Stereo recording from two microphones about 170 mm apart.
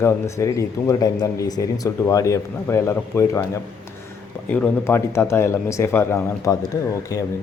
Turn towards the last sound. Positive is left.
turn(degrees=20)  # may be behind; listen again after turning